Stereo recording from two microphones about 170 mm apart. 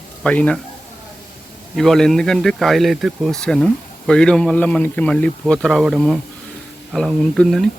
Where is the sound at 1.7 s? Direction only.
Centre (ahead or behind).